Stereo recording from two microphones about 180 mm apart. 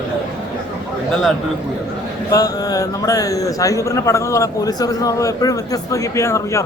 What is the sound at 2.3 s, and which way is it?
A man's voice, 20° left (ahead or behind).